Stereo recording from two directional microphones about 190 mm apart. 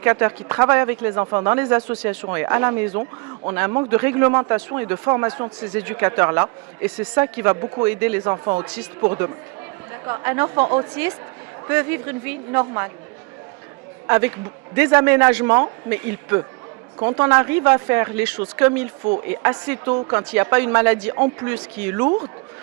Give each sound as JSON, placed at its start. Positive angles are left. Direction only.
{"t": 0.0, "sound": "speech", "side_deg": -15}
{"t": 2.9, "sound": "a man's voice", "side_deg": -25}
{"t": 3.9, "sound": "speech", "side_deg": -10}
{"t": 7.5, "sound": "a man's voice", "side_deg": -20}
{"t": 7.9, "sound": "a man's voice", "side_deg": -10}
{"t": 14.1, "sound": "speech", "side_deg": -10}